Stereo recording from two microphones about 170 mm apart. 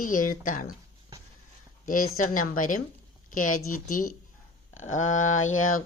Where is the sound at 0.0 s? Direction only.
55° left (ahead or behind).